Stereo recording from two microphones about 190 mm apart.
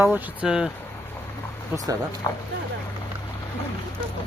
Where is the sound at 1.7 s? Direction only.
10° right (ahead or behind).